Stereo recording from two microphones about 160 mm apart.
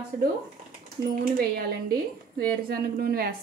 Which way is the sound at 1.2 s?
75° right (ahead or behind).